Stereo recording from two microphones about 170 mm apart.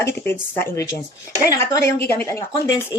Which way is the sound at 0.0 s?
15° left (ahead or behind).